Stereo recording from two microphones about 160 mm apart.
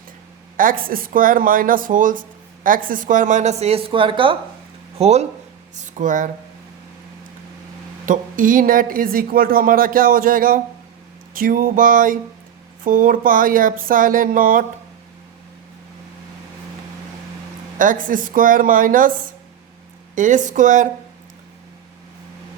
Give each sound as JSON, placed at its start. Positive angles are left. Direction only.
{"t": 0.5, "sound": "a woman's voice", "side_deg": -60}
{"t": 8.0, "sound": "a woman's voice", "side_deg": -55}
{"t": 17.7, "sound": "a woman's voice", "side_deg": -55}
{"t": 20.1, "sound": "a woman's voice", "side_deg": -50}